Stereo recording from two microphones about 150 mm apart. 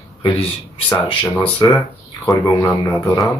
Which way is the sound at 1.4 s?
15° left (ahead or behind).